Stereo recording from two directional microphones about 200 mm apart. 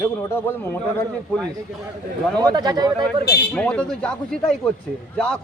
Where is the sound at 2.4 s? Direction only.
20° right (ahead or behind).